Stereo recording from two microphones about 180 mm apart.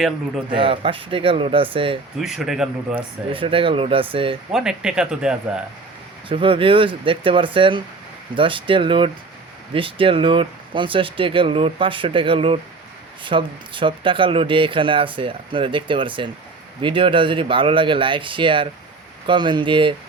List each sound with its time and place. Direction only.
0.5 s speech: 30° right (ahead or behind)
2.2 s speech: centre (ahead or behind)
3.3 s speech: 30° right (ahead or behind)
4.5 s speech: 5° right (ahead or behind)
6.2 s speech: 30° right (ahead or behind)